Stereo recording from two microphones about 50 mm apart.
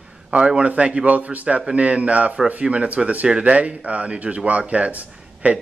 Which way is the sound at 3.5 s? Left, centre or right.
Right.